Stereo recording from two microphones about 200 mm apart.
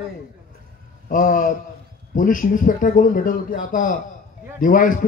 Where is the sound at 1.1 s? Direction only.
40° left (ahead or behind).